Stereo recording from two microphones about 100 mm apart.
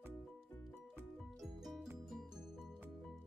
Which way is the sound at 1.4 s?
5° right (ahead or behind).